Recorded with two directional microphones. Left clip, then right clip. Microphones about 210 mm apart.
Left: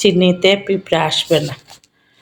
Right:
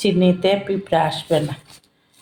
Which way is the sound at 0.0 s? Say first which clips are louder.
Left 5 dB; 35° left (ahead or behind).